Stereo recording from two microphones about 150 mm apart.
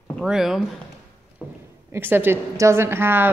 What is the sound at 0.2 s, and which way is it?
A woman's voice, 5° right (ahead or behind).